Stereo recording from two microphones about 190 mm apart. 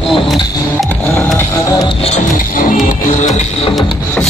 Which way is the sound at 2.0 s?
35° left (ahead or behind).